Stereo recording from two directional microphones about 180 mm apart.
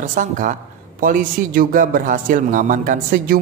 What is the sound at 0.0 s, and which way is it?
Speech, 45° right (ahead or behind).